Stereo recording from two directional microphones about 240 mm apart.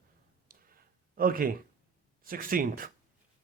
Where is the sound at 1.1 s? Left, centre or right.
Right.